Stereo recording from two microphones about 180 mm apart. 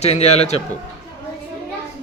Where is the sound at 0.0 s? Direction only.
35° left (ahead or behind).